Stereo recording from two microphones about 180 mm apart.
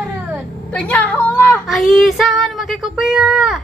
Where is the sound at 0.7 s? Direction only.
10° left (ahead or behind).